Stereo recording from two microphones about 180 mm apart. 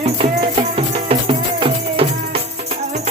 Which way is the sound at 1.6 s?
30° right (ahead or behind).